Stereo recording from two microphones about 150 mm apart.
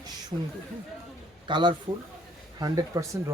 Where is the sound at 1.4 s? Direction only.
30° right (ahead or behind).